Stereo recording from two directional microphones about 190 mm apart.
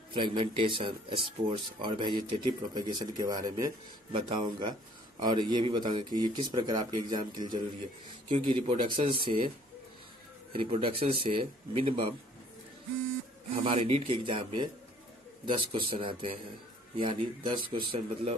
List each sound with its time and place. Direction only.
0.1 s speech: 25° right (ahead or behind)
10.5 s speech: 30° right (ahead or behind)
13.7 s speech: 30° right (ahead or behind)
17.7 s speech: 35° right (ahead or behind)